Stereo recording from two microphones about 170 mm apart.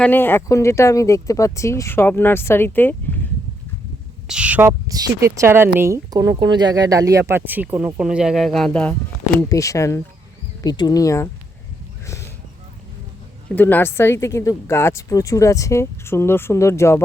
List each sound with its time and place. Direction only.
0.0 s speech: 10° left (ahead or behind)
4.3 s speech: 5° right (ahead or behind)
4.9 s speech: 20° right (ahead or behind); by 9.5 s 10° left (ahead or behind)
9.5 s speech: 20° left (ahead or behind)
13.6 s speech: 10° left (ahead or behind)